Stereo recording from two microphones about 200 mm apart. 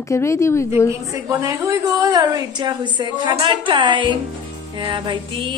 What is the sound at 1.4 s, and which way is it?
A woman's voice, 15° right (ahead or behind).